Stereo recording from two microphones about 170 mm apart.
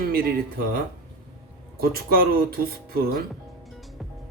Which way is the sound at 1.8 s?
60° right (ahead or behind).